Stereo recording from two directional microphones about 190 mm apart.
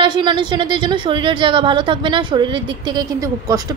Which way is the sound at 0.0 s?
25° right (ahead or behind).